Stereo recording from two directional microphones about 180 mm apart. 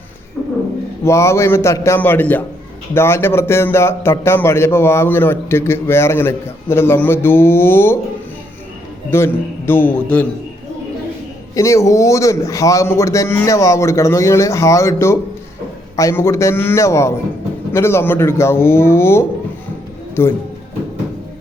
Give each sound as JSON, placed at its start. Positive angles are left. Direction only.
{"t": 1.0, "sound": "a man's voice", "side_deg": 15}
{"t": 9.0, "sound": "a man's voice", "side_deg": 15}
{"t": 11.5, "sound": "a man's voice", "side_deg": 15}